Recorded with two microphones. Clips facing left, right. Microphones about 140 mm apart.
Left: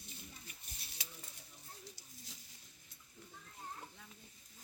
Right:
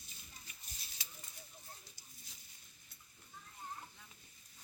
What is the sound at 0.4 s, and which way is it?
Livestock, 60° left (ahead or behind).